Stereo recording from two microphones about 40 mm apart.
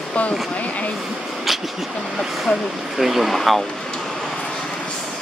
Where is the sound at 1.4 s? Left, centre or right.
Centre.